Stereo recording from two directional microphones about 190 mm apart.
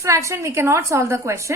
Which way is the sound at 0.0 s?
15° right (ahead or behind).